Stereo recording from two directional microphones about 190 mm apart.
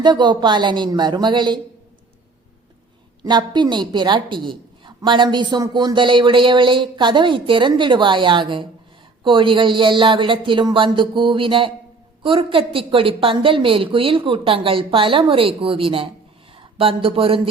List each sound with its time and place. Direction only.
0.0 s a woman's voice: 25° right (ahead or behind)
3.2 s a woman's voice: 25° right (ahead or behind)